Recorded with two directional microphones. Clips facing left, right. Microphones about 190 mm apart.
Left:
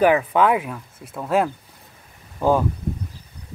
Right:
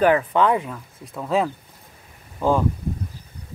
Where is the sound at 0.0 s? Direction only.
10° left (ahead or behind).